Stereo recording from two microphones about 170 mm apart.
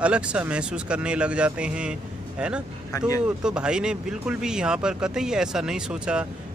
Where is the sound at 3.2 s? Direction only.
5° right (ahead or behind).